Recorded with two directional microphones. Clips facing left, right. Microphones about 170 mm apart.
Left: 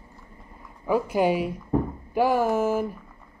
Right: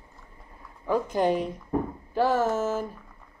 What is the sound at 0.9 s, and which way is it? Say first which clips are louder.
Speech: left 2 dB; 10° left (ahead or behind).